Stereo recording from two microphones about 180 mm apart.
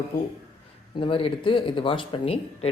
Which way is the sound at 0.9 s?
30° left (ahead or behind).